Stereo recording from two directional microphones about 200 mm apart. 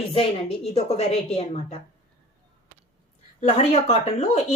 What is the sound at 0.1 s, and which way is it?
A woman's voice, 30° left (ahead or behind).